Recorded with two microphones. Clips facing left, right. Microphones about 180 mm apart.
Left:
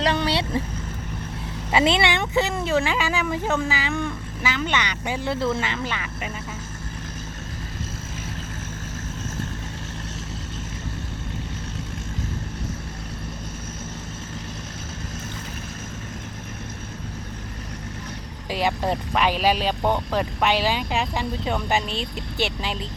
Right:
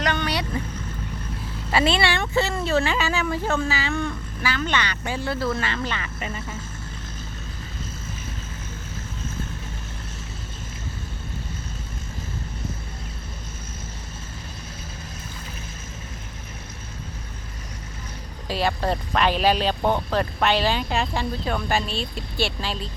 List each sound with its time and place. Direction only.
0.0 s speech: 30° left (ahead or behind)
1.7 s speech: 20° left (ahead or behind)
18.4 s speech: 15° left (ahead or behind)